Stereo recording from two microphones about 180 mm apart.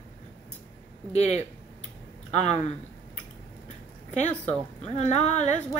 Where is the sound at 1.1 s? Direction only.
35° left (ahead or behind).